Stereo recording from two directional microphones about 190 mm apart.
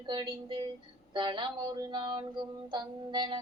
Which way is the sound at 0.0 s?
25° right (ahead or behind).